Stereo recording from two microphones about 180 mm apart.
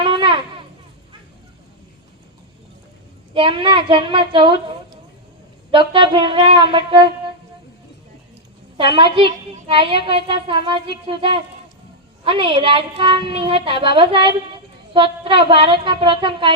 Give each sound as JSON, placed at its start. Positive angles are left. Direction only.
{"t": 0.0, "sound": "a sound", "side_deg": -30}
{"t": 3.3, "sound": "a woman's voice", "side_deg": -30}
{"t": 8.8, "sound": "a woman's voice", "side_deg": -25}